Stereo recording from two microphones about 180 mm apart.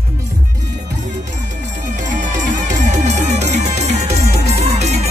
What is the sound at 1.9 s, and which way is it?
Music, 45° right (ahead or behind).